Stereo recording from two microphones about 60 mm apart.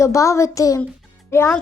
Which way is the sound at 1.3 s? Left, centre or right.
Left.